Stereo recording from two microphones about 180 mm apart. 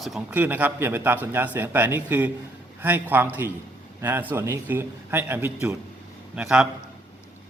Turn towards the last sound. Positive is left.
turn(degrees=-5)  # may be behind; listen again after turning